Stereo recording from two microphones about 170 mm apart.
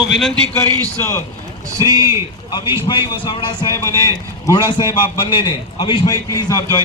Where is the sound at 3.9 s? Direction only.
20° right (ahead or behind).